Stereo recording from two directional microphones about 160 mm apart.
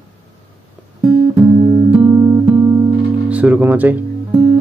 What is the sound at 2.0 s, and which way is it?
Music, 25° right (ahead or behind).